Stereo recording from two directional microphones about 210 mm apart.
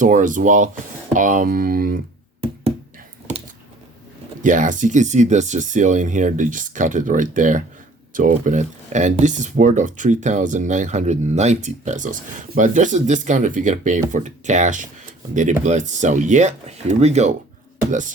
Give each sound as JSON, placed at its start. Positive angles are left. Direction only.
{"t": 0.0, "sound": "speech", "side_deg": -35}
{"t": 4.4, "sound": "speech", "side_deg": -40}